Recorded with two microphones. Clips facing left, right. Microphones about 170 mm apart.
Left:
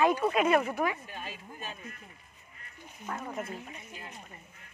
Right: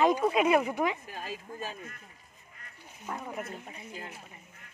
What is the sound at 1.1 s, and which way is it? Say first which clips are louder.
Speech: right 3 dB; 40° right (ahead or behind).